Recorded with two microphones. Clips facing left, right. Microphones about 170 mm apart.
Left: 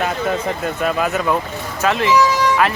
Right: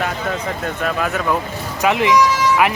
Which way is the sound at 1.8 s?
15° right (ahead or behind).